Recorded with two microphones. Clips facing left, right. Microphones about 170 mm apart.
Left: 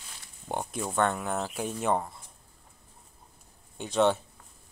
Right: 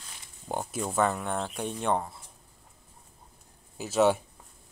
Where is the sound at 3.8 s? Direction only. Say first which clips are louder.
Right 1 dB; 5° right (ahead or behind).